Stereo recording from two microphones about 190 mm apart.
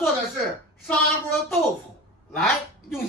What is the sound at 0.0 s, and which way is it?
A woman's voice, centre (ahead or behind).